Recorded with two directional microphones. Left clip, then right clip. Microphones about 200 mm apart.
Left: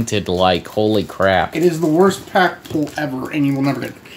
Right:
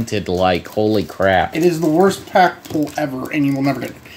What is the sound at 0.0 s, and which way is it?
Speech, 5° left (ahead or behind).